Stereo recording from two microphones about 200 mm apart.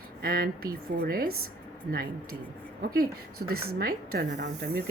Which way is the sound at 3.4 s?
55° right (ahead or behind).